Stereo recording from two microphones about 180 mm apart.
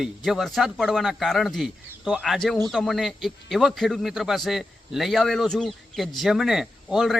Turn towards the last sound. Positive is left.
turn(degrees=0)  # may be behind; listen again after turning